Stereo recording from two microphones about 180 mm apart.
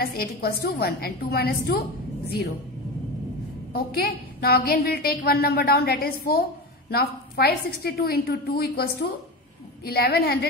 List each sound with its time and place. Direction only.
0.0 s a woman's voice: 55° left (ahead or behind)
3.7 s a woman's voice: 60° left (ahead or behind)